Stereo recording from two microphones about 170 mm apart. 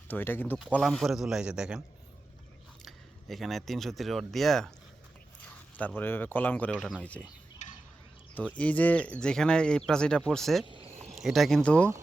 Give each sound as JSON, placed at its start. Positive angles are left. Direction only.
{"t": 0.1, "sound": "speech", "side_deg": 10}
{"t": 0.7, "sound": "speech", "side_deg": 0}
{"t": 2.8, "sound": "speech", "side_deg": 0}
{"t": 6.0, "sound": "speech", "side_deg": 10}
{"t": 7.6, "sound": "a sound", "side_deg": 45}
{"t": 8.5, "sound": "speech", "side_deg": 10}
{"t": 10.7, "sound": "cricket", "side_deg": -30}
{"t": 11.1, "sound": "speech", "side_deg": 0}